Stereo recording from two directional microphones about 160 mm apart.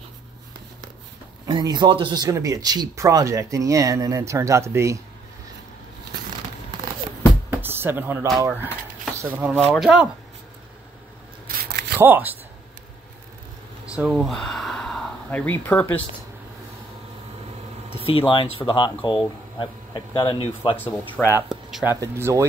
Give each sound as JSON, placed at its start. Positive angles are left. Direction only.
{"t": 1.4, "sound": "speech", "side_deg": -25}
{"t": 7.5, "sound": "music", "side_deg": -15}
{"t": 8.4, "sound": "speech", "side_deg": -10}
{"t": 11.4, "sound": "single-lens reflex camera", "side_deg": -75}
{"t": 12.0, "sound": "speech", "side_deg": -10}
{"t": 13.8, "sound": "speech", "side_deg": -5}
{"t": 18.0, "sound": "speech", "side_deg": 35}
{"t": 20.7, "sound": "speech", "side_deg": 10}
{"t": 21.5, "sound": "speech", "side_deg": 0}
{"t": 21.8, "sound": "speech", "side_deg": -15}